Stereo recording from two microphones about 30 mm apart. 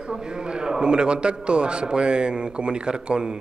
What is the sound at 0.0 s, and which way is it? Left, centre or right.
A man's voice, right.